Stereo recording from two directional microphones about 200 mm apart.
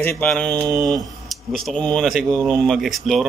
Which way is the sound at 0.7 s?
20° right (ahead or behind).